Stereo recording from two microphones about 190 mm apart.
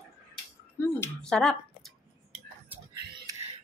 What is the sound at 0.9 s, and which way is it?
Speech, 5° left (ahead or behind).